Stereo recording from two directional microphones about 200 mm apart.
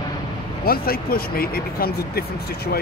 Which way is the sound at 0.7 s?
50° left (ahead or behind).